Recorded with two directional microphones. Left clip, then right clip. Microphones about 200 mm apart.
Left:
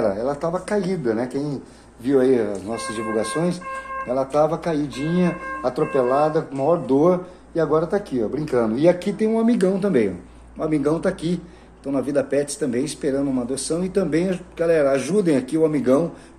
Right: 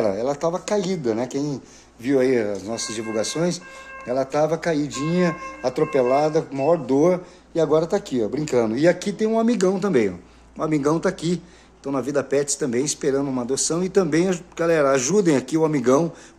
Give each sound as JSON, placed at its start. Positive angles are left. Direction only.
{"t": 0.0, "sound": "speech", "side_deg": -50}